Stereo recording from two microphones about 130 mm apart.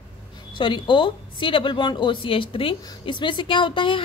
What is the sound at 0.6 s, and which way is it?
A woman's voice, 40° left (ahead or behind).